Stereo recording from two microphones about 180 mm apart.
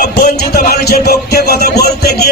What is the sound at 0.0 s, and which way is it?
Music, 60° left (ahead or behind).